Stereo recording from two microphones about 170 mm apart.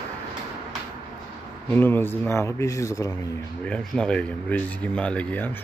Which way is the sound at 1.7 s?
10° left (ahead or behind).